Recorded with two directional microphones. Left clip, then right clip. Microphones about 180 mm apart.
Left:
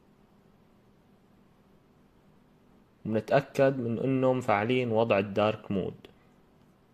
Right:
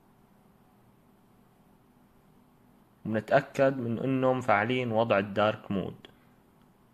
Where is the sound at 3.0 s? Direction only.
20° left (ahead or behind).